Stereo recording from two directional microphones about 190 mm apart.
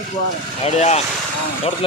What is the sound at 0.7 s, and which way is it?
Speech, 35° left (ahead or behind).